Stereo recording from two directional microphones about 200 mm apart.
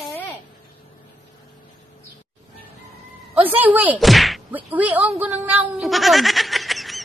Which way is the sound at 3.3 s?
10° right (ahead or behind).